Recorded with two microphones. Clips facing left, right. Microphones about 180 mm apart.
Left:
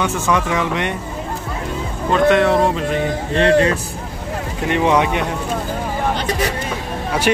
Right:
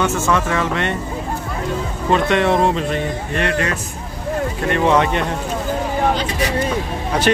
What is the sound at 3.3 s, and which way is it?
Speech, 30° left (ahead or behind).